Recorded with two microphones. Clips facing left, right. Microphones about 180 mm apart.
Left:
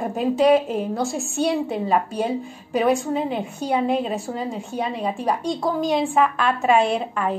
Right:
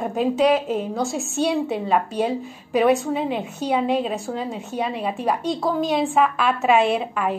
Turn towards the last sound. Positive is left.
turn(degrees=-5)  # may be behind; listen again after turning